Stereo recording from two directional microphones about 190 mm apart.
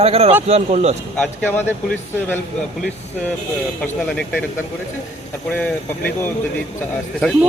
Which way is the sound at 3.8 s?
5° left (ahead or behind).